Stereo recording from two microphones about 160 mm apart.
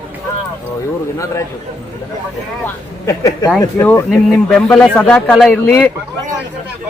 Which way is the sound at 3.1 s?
20° left (ahead or behind).